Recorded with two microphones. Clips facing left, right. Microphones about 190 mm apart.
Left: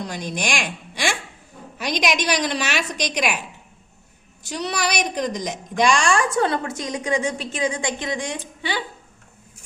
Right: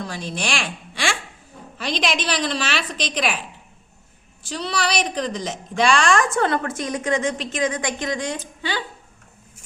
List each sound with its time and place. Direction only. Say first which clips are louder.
0.0 s a woman's voice: left 1 dB; 15° left (ahead or behind)
4.5 s a woman's voice: right 1 dB; 15° left (ahead or behind)
7.8 s a woman's voice: right 1 dB; 25° left (ahead or behind)